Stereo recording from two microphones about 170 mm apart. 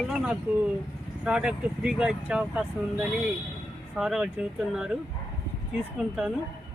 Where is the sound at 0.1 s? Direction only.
5° right (ahead or behind).